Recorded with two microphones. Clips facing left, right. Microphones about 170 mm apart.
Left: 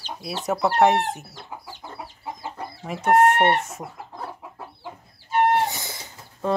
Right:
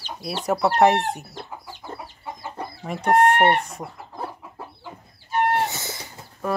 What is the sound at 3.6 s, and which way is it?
Chicken, 5° left (ahead or behind).